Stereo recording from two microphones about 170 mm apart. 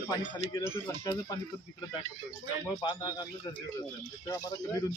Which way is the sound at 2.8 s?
25° left (ahead or behind).